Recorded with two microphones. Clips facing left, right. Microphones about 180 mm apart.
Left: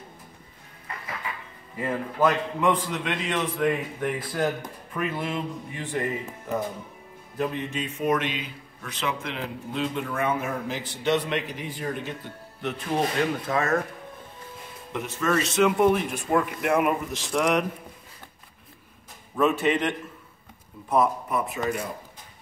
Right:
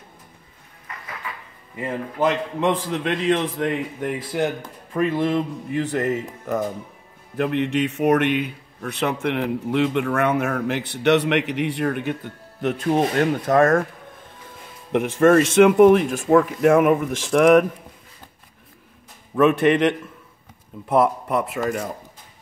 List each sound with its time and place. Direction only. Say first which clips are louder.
2.1 s a man's voice: right 2 dB; 30° right (ahead or behind)
4.0 s speech: right 4 dB; 20° right (ahead or behind)
4.9 s a man's voice: right 8 dB; 30° right (ahead or behind)
7.3 s a man's voice: right 7 dB; 70° right (ahead or behind)
12.6 s speech: right 6 dB; 50° right (ahead or behind)
14.9 s speech: right 11 dB; 65° right (ahead or behind); by 16.4 s 80° right
16.7 s speech: right 3 dB; 50° right (ahead or behind)
19.3 s a man's voice: right 6 dB; 80° right
20.9 s a man's voice: right 4 dB; 85° right
21.6 s speech: right 3 dB; 50° right (ahead or behind)